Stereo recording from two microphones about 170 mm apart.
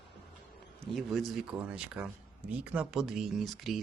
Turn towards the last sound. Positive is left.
turn(degrees=0)  # may be behind; listen again after turning